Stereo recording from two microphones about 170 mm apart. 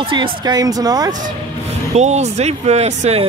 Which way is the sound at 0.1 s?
25° right (ahead or behind).